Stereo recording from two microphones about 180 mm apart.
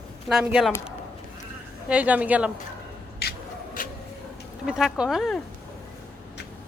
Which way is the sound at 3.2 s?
55° left (ahead or behind).